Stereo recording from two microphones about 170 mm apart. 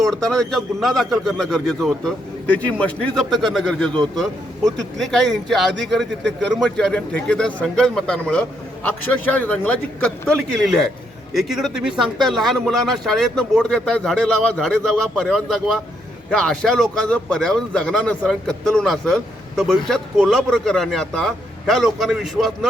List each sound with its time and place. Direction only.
0.0 s speech: 5° left (ahead or behind)
3.9 s speech: 25° right (ahead or behind)
4.2 s speech: centre (ahead or behind)